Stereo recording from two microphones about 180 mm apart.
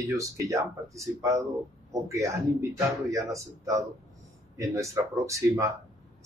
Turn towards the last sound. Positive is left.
turn(degrees=-15)  # may be behind; listen again after turning